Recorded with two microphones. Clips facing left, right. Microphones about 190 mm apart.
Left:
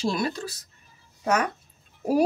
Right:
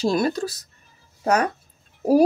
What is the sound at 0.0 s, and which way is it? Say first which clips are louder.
Speech: right 6 dB; 40° right (ahead or behind).